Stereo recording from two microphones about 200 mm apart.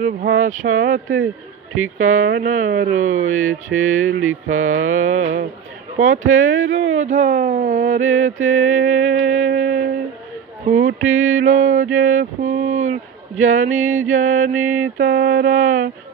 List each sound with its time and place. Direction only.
0.0 s mantra: 40° right (ahead or behind)
11.0 s mantra: 40° right (ahead or behind)
15.0 s speech: 45° right (ahead or behind)